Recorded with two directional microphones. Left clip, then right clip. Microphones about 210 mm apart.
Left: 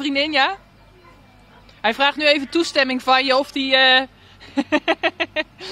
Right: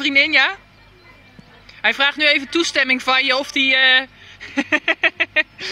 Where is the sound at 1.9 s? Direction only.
30° left (ahead or behind).